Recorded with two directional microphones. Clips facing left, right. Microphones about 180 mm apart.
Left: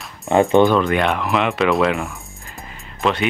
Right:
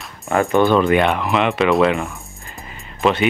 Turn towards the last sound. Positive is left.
turn(degrees=0)  # may be behind; listen again after turning